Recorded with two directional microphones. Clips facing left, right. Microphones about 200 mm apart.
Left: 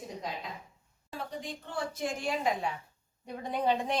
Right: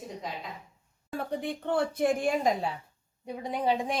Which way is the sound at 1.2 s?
60° right (ahead or behind).